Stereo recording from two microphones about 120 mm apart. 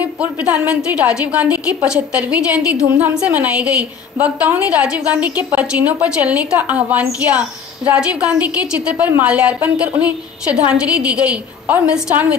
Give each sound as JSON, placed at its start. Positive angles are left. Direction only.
{"t": 0.0, "sound": "a woman's voice", "side_deg": -10}